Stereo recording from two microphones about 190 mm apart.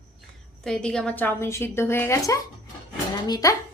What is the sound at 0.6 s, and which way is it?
A woman's voice, centre (ahead or behind).